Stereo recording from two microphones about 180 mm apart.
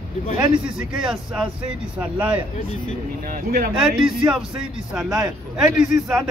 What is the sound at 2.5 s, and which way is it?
Speech, 35° left (ahead or behind).